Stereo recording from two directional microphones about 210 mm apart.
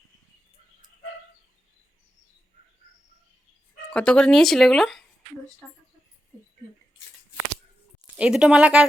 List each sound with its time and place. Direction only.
3.8 s speech: 5° left (ahead or behind)
8.1 s speech: 5° right (ahead or behind)